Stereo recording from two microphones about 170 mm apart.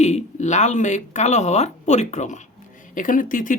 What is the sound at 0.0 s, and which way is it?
Speech, 40° left (ahead or behind).